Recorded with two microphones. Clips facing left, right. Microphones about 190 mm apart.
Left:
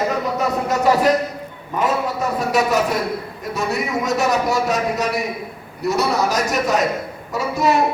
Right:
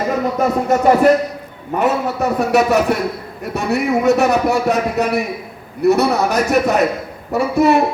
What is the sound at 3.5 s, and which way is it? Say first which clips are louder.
A man's voice: right 5 dB; 60° right (ahead or behind).